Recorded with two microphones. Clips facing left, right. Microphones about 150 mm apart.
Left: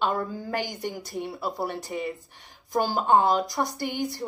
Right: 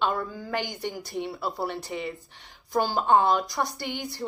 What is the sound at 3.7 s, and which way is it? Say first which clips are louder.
Speech: left 4 dB; 45° left (ahead or behind).